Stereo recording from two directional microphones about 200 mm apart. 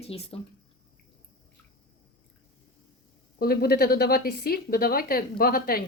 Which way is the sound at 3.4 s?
50° left (ahead or behind).